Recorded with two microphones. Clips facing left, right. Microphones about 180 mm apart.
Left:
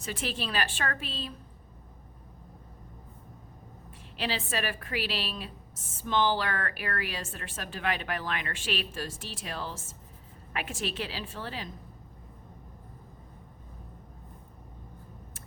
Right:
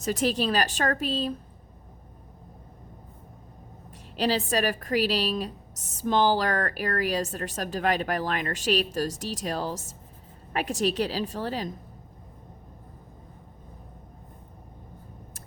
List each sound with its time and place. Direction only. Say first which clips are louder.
0.0 s a woman's voice: right 9 dB; 40° right (ahead or behind)
4.2 s a woman's voice: right 8 dB; 40° right (ahead or behind)